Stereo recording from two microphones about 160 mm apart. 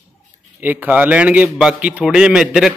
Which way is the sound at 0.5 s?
10° right (ahead or behind).